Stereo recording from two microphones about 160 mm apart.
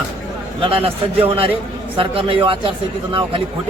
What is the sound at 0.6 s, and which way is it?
A man's voice, 35° right (ahead or behind).